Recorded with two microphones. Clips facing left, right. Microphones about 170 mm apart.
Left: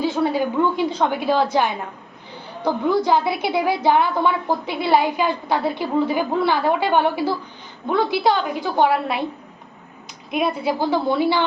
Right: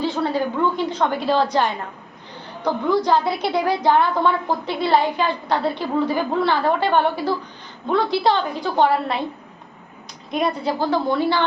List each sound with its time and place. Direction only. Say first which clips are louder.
0.0 s a sound: left 2 dB; 5° left (ahead or behind)
2.6 s a woman's voice: even; 5° left (ahead or behind)
10.3 s a woman's voice: left 1 dB; 5° left (ahead or behind)